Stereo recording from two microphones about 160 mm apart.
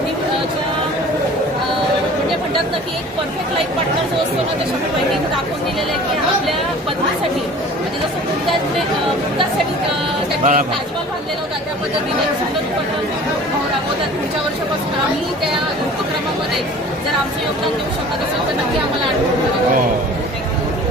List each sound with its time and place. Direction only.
10.4 s speech: 55° right (ahead or behind)